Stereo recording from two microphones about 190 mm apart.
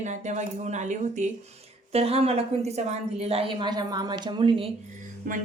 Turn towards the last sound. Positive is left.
turn(degrees=-45)  # may be behind; listen again after turning